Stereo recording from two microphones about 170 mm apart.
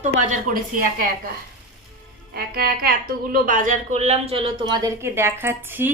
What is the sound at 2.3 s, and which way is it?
Speech, 60° right (ahead or behind).